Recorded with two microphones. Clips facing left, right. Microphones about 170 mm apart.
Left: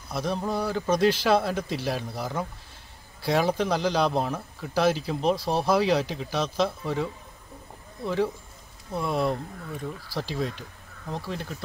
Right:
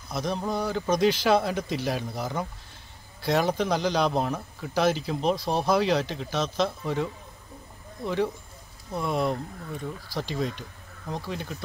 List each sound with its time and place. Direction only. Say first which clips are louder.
0.1 s speech: left 1 dB; 5° left (ahead or behind)